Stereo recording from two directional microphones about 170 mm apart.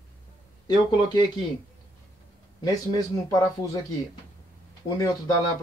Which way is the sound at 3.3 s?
20° left (ahead or behind).